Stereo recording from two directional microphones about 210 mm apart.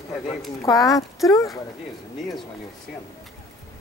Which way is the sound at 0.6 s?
15° left (ahead or behind).